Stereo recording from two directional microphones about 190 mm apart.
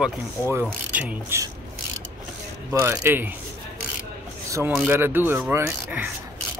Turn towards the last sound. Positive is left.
turn(degrees=-10)  # may be behind; listen again after turning